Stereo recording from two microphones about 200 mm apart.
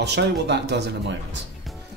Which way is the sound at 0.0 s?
60° right (ahead or behind).